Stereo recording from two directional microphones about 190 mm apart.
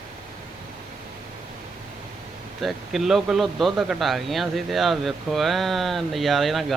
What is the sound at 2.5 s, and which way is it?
Speech, centre (ahead or behind).